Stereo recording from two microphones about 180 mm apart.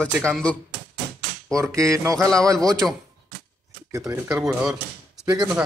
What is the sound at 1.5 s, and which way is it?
Speech, 15° right (ahead or behind).